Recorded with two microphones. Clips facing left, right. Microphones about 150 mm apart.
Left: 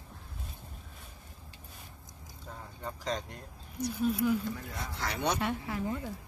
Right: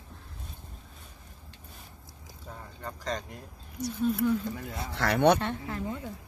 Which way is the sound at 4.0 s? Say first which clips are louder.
Right 2 dB; 5° left (ahead or behind).